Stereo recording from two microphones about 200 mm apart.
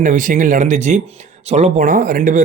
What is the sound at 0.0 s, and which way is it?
Speech, 40° right (ahead or behind).